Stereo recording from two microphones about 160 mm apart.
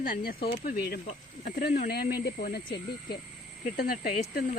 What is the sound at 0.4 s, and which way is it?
A woman's voice, 65° left (ahead or behind).